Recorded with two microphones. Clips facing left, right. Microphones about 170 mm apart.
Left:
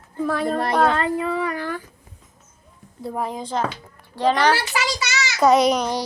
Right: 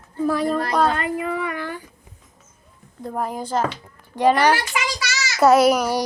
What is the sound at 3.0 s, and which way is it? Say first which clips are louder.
A child's voice: right 1 dB; centre (ahead or behind).